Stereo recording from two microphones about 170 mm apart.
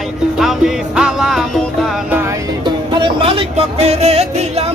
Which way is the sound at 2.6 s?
30° right (ahead or behind).